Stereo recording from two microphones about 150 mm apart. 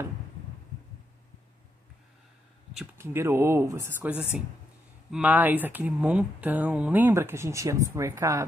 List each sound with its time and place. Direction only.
2.7 s speech: 10° right (ahead or behind)
5.1 s speech: 10° right (ahead or behind)